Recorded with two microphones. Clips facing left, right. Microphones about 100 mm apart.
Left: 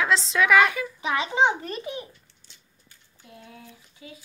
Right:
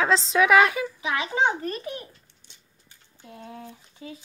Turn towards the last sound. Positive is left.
turn(degrees=-35)  # may be behind; listen again after turning